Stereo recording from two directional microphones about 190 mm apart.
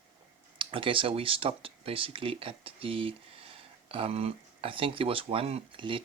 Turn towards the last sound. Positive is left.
turn(degrees=-25)  # may be behind; listen again after turning